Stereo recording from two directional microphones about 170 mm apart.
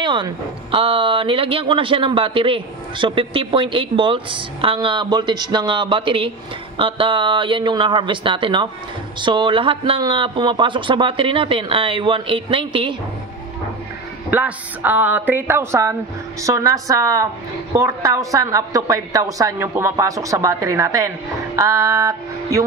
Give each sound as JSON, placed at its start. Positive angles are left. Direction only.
{"t": 0.0, "sound": "speech", "side_deg": -25}
{"t": 14.3, "sound": "speech", "side_deg": -10}
{"t": 21.5, "sound": "music", "side_deg": -20}